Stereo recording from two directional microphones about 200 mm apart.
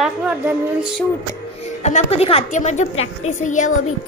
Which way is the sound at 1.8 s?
35° left (ahead or behind).